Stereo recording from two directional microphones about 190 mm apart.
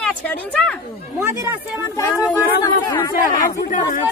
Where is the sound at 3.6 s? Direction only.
45° left (ahead or behind).